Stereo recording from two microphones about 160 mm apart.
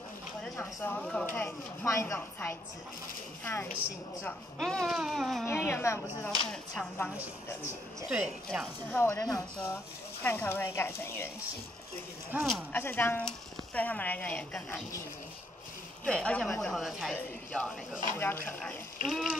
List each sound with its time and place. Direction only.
0.4 s speech: 10° left (ahead or behind)
4.6 s speech: centre (ahead or behind)
5.5 s speech: 15° left (ahead or behind)
6.5 s speech: 5° left (ahead or behind)
8.1 s speech: 5° right (ahead or behind)
8.9 s speech: 15° left (ahead or behind)
12.3 s speech: 10° right (ahead or behind)
12.7 s speech: 10° left (ahead or behind)
16.1 s speech: 5° left (ahead or behind)
19.0 s speech: centre (ahead or behind)